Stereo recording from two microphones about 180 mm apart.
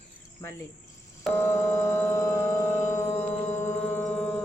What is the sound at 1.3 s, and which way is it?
Civil defense siren, 15° left (ahead or behind).